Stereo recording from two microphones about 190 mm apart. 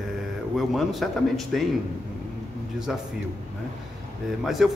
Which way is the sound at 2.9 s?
5° right (ahead or behind).